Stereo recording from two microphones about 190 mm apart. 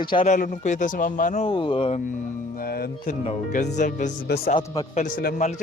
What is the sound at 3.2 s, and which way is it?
Speech, 35° left (ahead or behind).